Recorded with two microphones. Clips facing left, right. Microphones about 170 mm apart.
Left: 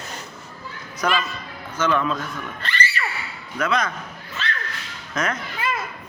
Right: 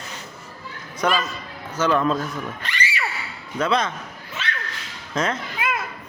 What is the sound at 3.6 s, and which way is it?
Speech, 30° right (ahead or behind).